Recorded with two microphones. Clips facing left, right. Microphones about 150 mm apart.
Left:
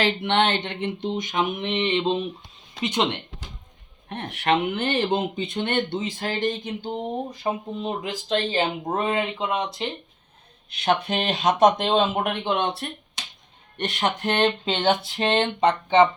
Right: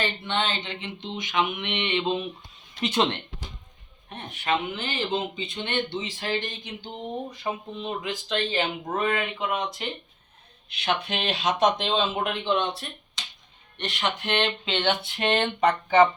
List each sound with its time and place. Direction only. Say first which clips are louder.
0.0 s speech: left 6 dB; 75° left (ahead or behind); by 2.2 s 30° left (ahead or behind)
2.8 s speech: even; 15° left (ahead or behind)
4.1 s speech: left 5 dB; 65° left (ahead or behind); by 9.6 s 25° left (ahead or behind)
10.7 s speech: left 5 dB; 45° left (ahead or behind)
13.7 s a sound: left 4 dB; 50° left (ahead or behind); by 16.0 s 25° left (ahead or behind)